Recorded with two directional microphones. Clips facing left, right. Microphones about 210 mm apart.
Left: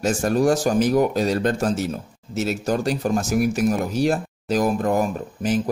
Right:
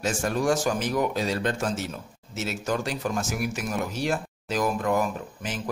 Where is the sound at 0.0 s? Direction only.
40° left (ahead or behind).